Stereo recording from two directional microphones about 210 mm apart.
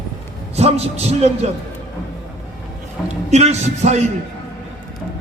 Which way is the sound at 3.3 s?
30° right (ahead or behind).